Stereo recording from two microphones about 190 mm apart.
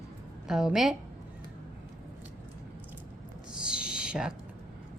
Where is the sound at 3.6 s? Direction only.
5° right (ahead or behind).